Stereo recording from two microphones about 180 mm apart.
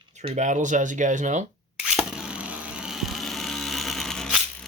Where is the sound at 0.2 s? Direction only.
40° right (ahead or behind).